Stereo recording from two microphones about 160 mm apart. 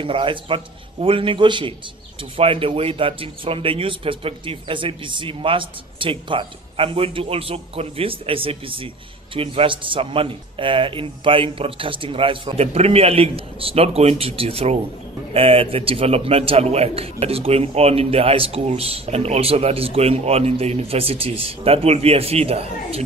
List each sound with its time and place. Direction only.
0.0 s a man's voice: 35° right (ahead or behind)